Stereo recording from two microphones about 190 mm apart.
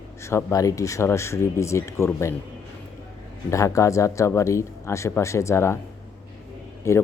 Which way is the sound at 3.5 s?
15° left (ahead or behind).